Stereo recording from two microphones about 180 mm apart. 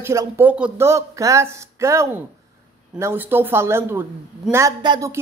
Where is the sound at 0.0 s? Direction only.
15° right (ahead or behind).